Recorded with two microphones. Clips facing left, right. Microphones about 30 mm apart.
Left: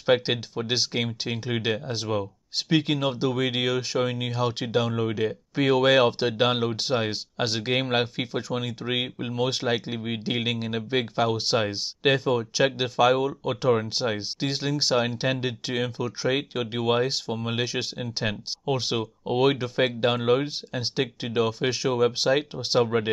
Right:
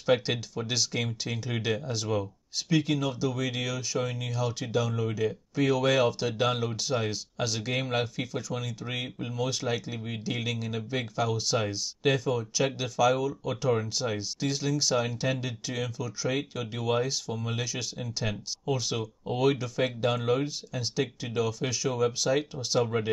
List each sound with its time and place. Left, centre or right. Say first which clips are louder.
0.0 s speech: left 3 dB; left
2.5 s speech: left 3 dB; left
22.8 s speech: left 4 dB; left